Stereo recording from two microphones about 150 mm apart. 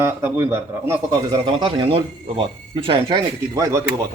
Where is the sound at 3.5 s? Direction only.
20° right (ahead or behind).